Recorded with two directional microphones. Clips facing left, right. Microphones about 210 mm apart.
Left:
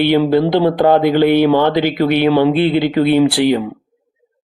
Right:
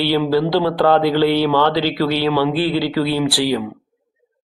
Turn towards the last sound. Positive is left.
turn(degrees=20)  # may be behind; listen again after turning